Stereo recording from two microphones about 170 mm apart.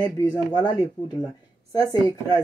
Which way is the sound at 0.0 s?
25° left (ahead or behind).